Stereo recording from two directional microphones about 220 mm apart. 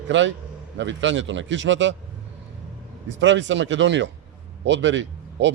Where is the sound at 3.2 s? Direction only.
55° right (ahead or behind).